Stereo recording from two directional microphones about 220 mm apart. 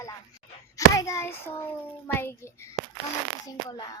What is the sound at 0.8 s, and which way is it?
Hands, 15° left (ahead or behind).